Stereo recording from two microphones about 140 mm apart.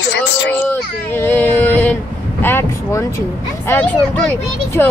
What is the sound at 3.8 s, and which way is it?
Music, 10° left (ahead or behind).